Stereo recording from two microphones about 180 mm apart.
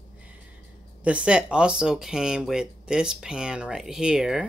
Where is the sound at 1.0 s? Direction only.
5° right (ahead or behind).